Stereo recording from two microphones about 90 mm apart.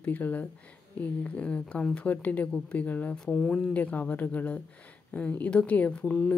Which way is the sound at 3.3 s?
5° left (ahead or behind).